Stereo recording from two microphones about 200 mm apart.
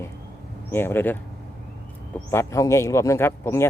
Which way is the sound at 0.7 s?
10° left (ahead or behind).